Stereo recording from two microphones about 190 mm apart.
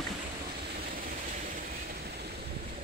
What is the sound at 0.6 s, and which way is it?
Vehicle, 50° right (ahead or behind).